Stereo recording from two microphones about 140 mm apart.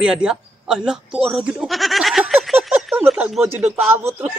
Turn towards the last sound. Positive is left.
turn(degrees=-10)  # may be behind; listen again after turning